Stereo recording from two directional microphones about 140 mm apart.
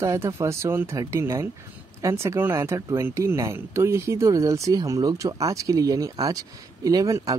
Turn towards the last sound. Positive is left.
turn(degrees=-25)  # may be behind; listen again after turning